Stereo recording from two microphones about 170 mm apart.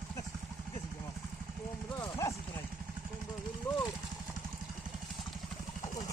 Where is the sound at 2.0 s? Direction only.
20° left (ahead or behind).